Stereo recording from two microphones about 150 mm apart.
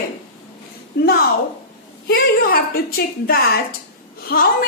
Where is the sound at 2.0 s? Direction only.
90° left.